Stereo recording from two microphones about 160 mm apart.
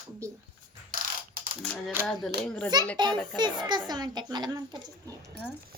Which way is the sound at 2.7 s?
25° right (ahead or behind).